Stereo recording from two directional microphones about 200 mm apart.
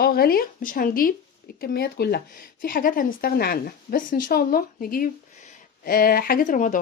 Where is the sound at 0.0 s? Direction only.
50° left (ahead or behind).